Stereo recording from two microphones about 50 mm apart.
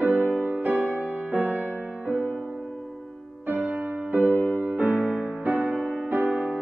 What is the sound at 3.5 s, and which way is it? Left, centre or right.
Music, right.